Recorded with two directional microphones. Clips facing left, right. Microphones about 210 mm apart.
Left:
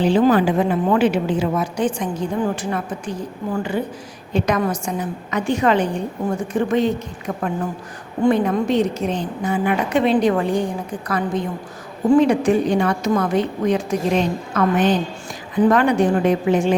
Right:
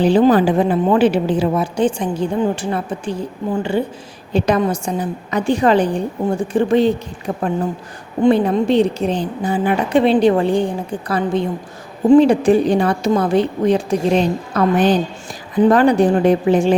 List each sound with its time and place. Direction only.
0.0 s a woman's voice: 35° right (ahead or behind)
12.0 s a woman's voice: 25° right (ahead or behind)